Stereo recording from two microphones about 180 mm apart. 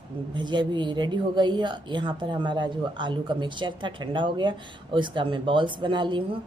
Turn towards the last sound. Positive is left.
turn(degrees=-25)  # may be behind; listen again after turning